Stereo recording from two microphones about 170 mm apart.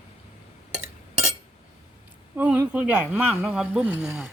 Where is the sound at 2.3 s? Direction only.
10° right (ahead or behind).